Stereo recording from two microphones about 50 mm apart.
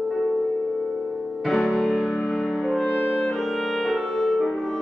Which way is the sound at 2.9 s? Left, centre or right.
Left.